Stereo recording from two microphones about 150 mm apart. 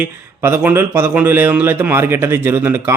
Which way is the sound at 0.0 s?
15° right (ahead or behind).